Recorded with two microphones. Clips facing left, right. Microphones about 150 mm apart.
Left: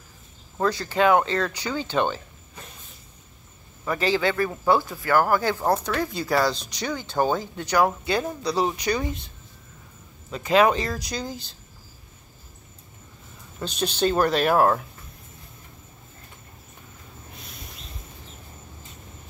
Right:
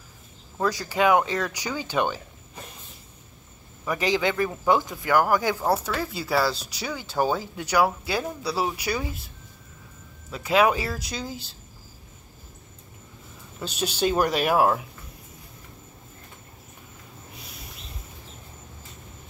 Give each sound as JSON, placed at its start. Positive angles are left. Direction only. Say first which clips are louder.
{"t": 0.6, "sound": "speech", "louder": "left 2 dB", "side_deg": -10}
{"t": 3.8, "sound": "speech", "louder": "left 1 dB", "side_deg": -15}
{"t": 10.3, "sound": "speech", "louder": "left 2 dB", "side_deg": -5}
{"t": 13.6, "sound": "speech", "louder": "left 2 dB", "side_deg": -5}